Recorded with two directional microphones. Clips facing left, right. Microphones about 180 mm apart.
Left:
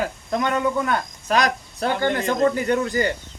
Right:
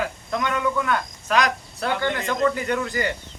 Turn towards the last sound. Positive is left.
turn(degrees=35)  # may be behind; listen again after turning